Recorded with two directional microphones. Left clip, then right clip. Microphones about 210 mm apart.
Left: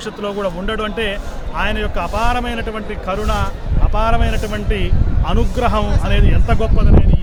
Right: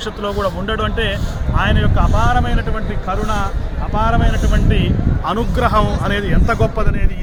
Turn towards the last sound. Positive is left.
turn(degrees=-15)  # may be behind; listen again after turning